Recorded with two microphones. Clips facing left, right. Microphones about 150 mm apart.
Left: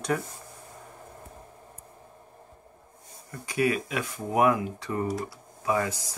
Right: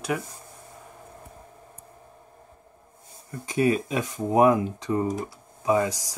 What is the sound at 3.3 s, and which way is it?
Speech, 25° right (ahead or behind).